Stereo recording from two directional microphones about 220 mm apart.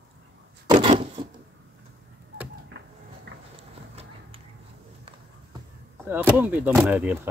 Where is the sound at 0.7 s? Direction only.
25° right (ahead or behind).